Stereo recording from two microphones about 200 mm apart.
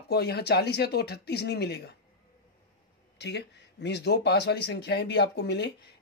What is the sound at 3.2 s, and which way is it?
Speech, 55° left (ahead or behind).